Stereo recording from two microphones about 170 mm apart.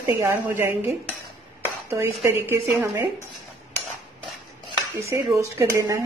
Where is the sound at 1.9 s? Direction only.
15° right (ahead or behind).